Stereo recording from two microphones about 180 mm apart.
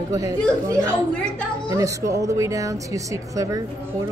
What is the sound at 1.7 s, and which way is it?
Speech, 15° right (ahead or behind).